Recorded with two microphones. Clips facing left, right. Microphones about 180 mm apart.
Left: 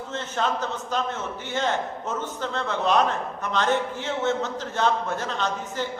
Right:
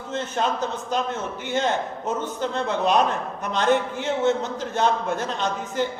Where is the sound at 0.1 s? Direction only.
15° right (ahead or behind).